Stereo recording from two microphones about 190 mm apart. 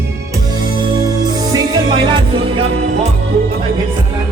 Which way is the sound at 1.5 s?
20° right (ahead or behind).